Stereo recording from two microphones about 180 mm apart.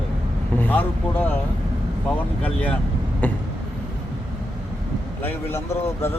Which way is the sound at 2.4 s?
5° left (ahead or behind).